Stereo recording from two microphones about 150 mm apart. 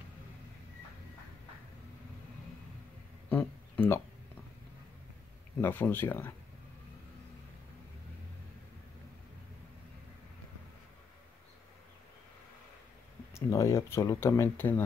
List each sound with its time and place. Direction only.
3.3 s a sound: 10° left (ahead or behind)
5.6 s speech: 15° left (ahead or behind)
13.3 s speech: 20° left (ahead or behind)